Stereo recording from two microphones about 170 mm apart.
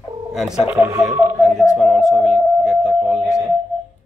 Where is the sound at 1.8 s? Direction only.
Centre (ahead or behind).